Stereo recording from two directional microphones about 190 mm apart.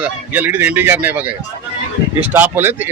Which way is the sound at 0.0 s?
10° right (ahead or behind).